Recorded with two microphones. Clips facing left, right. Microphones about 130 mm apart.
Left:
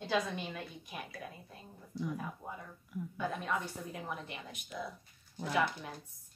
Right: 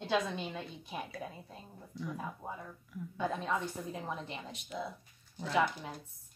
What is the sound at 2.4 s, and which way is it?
A woman's voice, 30° right (ahead or behind).